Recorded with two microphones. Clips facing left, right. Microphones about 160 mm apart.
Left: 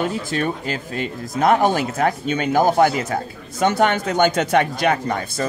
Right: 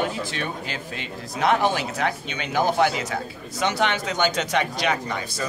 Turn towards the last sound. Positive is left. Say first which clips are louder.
# left 5 dB
turn(degrees=50)  # may be behind; listen again after turning